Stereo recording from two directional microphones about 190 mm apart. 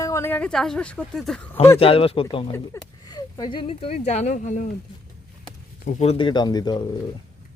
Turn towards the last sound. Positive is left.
turn(degrees=25)  # may be behind; listen again after turning